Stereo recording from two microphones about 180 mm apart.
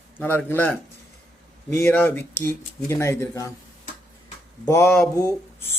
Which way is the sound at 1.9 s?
10° left (ahead or behind).